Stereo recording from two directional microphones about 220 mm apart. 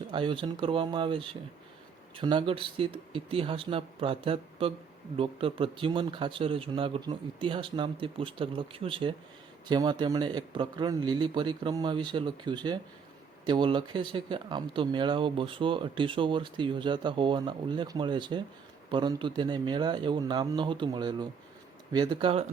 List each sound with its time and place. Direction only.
0.1 s speech: 25° right (ahead or behind)